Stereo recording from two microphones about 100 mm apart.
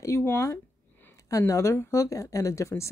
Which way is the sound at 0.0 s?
25° left (ahead or behind).